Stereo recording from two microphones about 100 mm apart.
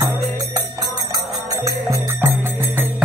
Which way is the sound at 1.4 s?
35° right (ahead or behind).